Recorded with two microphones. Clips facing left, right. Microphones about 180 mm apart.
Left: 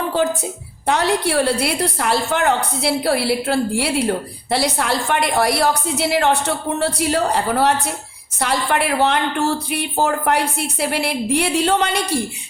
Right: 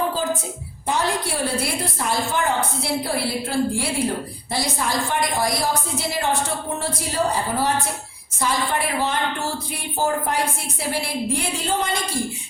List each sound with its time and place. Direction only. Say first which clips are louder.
0.9 s a woman's voice: left 5 dB; 70° left (ahead or behind)